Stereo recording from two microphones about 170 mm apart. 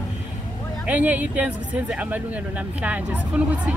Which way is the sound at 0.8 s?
10° right (ahead or behind).